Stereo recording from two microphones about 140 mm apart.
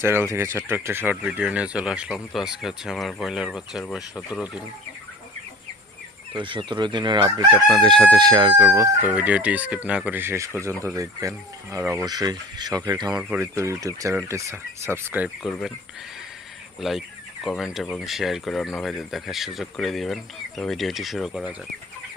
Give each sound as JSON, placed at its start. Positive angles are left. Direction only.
{"t": 0.0, "sound": "speech", "side_deg": -20}
{"t": 6.3, "sound": "speech", "side_deg": -35}
{"t": 8.6, "sound": "speech", "side_deg": -15}
{"t": 13.1, "sound": "speech", "side_deg": -5}
{"t": 13.4, "sound": "speech", "side_deg": -20}
{"t": 16.8, "sound": "speech", "side_deg": 0}